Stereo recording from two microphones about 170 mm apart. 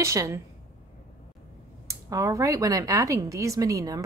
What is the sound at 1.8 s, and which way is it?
Speech, 20° right (ahead or behind).